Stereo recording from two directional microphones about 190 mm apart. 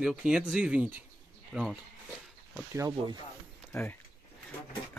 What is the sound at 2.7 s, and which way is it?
Speech, 15° right (ahead or behind).